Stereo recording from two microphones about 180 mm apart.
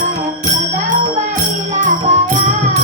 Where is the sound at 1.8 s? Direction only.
45° right (ahead or behind).